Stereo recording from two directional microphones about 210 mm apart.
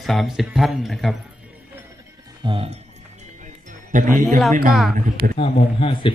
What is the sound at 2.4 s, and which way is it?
Music, 25° right (ahead or behind).